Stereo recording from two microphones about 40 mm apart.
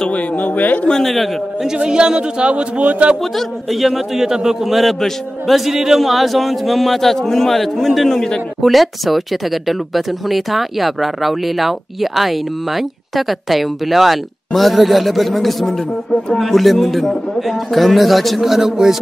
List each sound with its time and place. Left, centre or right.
0.1 s a man's voice: left
0.9 s speech: centre
1.9 s speech: right
2.8 s speech: right
3.3 s speech: centre
4.7 s speech: centre